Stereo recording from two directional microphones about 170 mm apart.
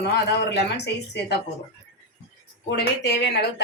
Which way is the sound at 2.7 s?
75° left (ahead or behind).